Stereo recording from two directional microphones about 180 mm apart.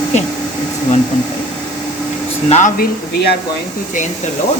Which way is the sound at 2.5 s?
45° left (ahead or behind).